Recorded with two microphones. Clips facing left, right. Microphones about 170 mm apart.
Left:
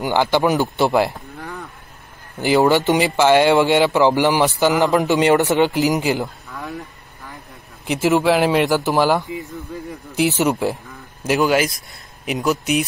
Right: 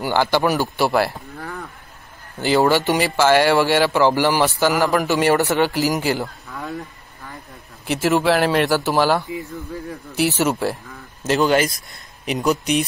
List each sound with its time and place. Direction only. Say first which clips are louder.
0.0 s speech: left 1 dB; 15° left (ahead or behind)
1.1 s livestock: even; centre (ahead or behind)
2.3 s speech: left 2 dB; 15° left (ahead or behind)
7.8 s a man's voice: left 1 dB; 15° left (ahead or behind)